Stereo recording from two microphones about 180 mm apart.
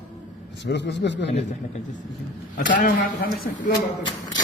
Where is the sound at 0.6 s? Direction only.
75° left (ahead or behind).